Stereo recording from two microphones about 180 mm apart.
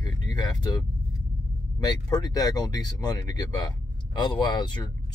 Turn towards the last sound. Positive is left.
turn(degrees=25)  # may be behind; listen again after turning